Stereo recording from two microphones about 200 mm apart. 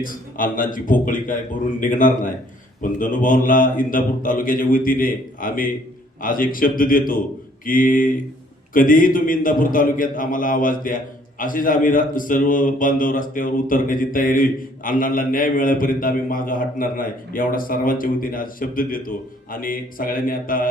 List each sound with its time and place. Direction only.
0.0 s a man's voice: 45° left (ahead or behind)